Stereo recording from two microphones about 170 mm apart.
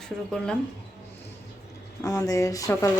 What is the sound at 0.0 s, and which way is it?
Speech, 5° left (ahead or behind).